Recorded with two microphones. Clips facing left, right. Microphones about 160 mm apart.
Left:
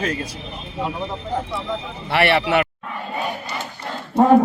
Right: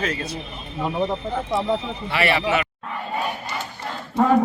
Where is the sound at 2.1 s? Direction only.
65° left (ahead or behind).